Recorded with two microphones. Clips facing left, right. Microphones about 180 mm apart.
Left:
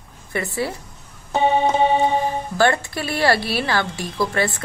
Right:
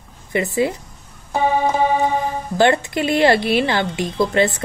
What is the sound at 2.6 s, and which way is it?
A woman's voice, 20° right (ahead or behind).